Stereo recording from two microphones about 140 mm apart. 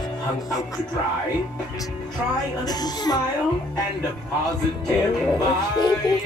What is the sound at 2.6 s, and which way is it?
Speech, 30° left (ahead or behind).